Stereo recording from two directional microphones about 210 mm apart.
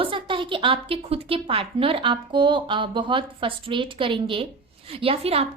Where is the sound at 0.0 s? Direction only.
25° right (ahead or behind).